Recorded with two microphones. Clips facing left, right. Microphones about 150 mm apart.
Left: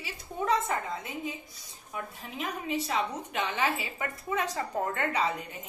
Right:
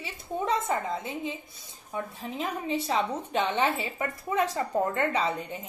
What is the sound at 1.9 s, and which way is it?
A woman's voice, 30° right (ahead or behind).